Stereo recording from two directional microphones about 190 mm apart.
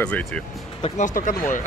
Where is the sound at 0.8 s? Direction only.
35° left (ahead or behind).